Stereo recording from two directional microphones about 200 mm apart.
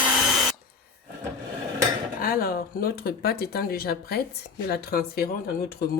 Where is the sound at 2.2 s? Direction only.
50° left (ahead or behind).